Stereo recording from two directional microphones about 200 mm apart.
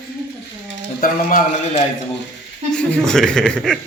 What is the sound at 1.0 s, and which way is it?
Speech, 40° left (ahead or behind).